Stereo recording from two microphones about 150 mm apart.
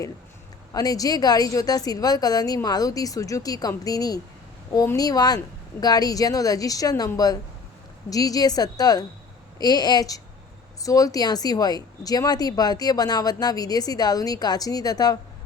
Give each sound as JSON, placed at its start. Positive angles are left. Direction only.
{"t": 0.7, "sound": "speech", "side_deg": 25}